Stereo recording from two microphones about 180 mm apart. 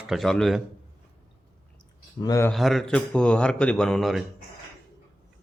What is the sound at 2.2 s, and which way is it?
Speech, 20° left (ahead or behind).